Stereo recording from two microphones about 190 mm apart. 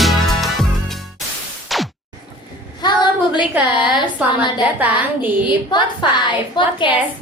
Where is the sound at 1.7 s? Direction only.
Centre (ahead or behind).